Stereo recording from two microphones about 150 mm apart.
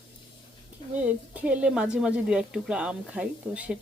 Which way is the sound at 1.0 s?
10° right (ahead or behind).